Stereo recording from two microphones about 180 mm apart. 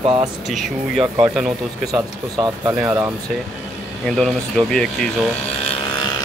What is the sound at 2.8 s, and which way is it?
Speech, 10° right (ahead or behind).